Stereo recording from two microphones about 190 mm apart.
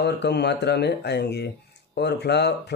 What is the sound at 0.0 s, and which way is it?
Speech, 60° left (ahead or behind).